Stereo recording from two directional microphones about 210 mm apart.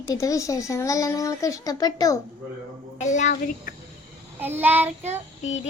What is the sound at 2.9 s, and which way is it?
Speech, 35° left (ahead or behind).